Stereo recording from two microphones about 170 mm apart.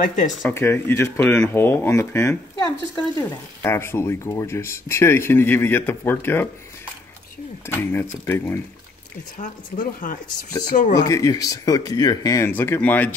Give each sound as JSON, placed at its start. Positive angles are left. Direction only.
{"t": 0.0, "sound": "speech", "side_deg": 50}
{"t": 0.5, "sound": "speech", "side_deg": 15}
{"t": 7.6, "sound": "speech", "side_deg": 15}
{"t": 9.4, "sound": "speech", "side_deg": 50}
{"t": 11.1, "sound": "speech", "side_deg": 20}